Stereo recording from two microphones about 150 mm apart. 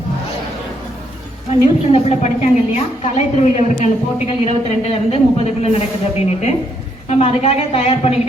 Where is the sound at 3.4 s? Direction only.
50° left (ahead or behind).